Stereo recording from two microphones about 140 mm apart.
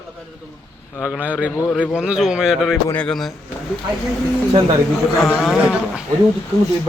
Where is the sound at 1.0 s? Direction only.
10° right (ahead or behind).